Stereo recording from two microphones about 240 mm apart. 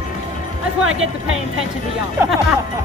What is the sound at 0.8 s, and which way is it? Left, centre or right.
Speech, right.